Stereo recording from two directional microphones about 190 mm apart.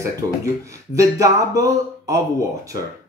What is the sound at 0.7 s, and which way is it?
Speech, 15° right (ahead or behind).